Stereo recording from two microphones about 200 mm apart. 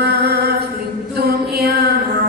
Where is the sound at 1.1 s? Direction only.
50° right (ahead or behind).